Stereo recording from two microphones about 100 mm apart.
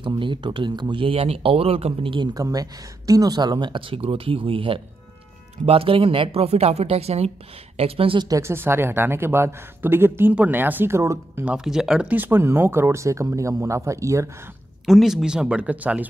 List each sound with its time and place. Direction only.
0.0 s speech: 55° right (ahead or behind); by 2.1 s 80° right
2.3 s a woman's voice: 35° right (ahead or behind); by 8.2 s 70° right (ahead or behind)
8.4 s speech: 25° right (ahead or behind)
11.4 s speech: 5° right (ahead or behind)
12.1 s speech: 20° right (ahead or behind)
14.9 s speech: centre (ahead or behind)